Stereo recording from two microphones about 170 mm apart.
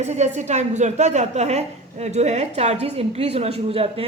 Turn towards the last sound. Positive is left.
turn(degrees=-35)  # may be behind; listen again after turning